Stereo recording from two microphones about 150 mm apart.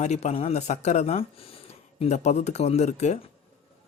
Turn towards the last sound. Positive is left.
turn(degrees=50)  # may be behind; listen again after turning